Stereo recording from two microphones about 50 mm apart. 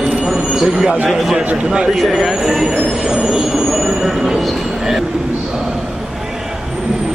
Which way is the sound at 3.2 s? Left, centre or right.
Centre.